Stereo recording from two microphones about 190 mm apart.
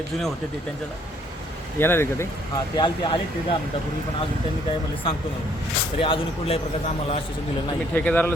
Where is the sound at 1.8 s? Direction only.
10° left (ahead or behind).